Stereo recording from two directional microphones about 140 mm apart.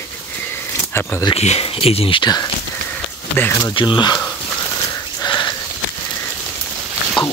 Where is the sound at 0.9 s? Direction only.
15° left (ahead or behind).